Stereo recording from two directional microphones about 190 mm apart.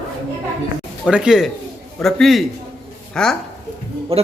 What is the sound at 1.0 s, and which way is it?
A man's voice, 5° right (ahead or behind).